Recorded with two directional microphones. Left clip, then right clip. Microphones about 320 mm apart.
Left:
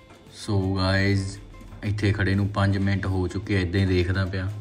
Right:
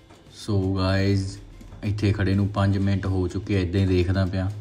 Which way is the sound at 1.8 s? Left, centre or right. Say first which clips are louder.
Even; centre.